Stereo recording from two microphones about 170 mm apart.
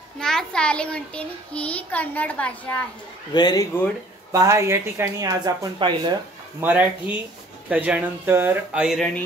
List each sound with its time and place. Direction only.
0.2 s a child's voice: 5° left (ahead or behind)
3.3 s speech: 25° left (ahead or behind)
4.3 s speech: 20° right (ahead or behind)
6.6 s speech: 10° right (ahead or behind)